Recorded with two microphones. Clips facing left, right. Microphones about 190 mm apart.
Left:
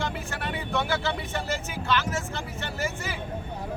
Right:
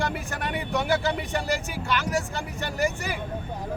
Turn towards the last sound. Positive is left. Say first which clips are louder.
# right 5 dB
turn(degrees=-15)  # may be behind; listen again after turning